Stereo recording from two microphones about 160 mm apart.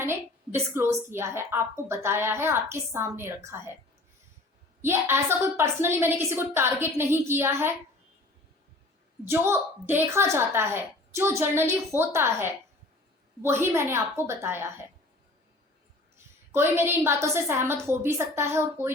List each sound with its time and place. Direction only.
0.0 s a woman's voice: 15° right (ahead or behind)
4.8 s a woman's voice: 15° right (ahead or behind)
9.2 s a woman's voice: 15° right (ahead or behind)
16.1 s a woman's voice: 15° right (ahead or behind)